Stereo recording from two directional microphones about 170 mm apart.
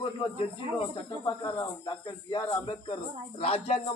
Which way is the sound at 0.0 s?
30° left (ahead or behind).